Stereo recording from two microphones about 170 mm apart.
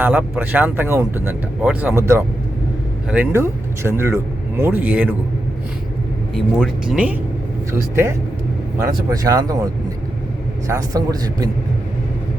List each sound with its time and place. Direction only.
0.0 s speech: 10° right (ahead or behind)
6.3 s a man's voice: centre (ahead or behind); by 9.6 s 20° right (ahead or behind)
10.7 s a man's voice: 20° right (ahead or behind)